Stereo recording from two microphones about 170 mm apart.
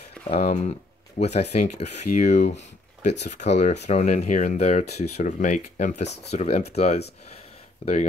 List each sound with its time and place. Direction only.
0.3 s speech: 40° left (ahead or behind)